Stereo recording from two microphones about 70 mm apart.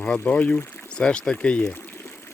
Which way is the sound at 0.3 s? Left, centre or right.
Centre.